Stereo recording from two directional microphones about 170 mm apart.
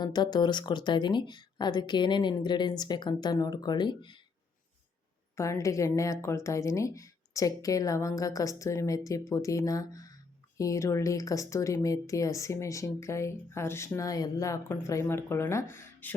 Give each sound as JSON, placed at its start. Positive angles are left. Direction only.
{"t": 0.0, "sound": "a woman's voice", "side_deg": 25}
{"t": 5.4, "sound": "a woman's voice", "side_deg": 20}